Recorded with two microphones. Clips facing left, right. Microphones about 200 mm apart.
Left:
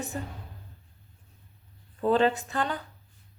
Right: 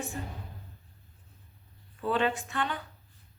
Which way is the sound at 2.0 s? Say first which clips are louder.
Left 5 dB; 40° left (ahead or behind).